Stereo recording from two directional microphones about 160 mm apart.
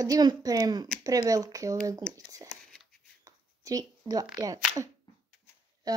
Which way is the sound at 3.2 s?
20° right (ahead or behind).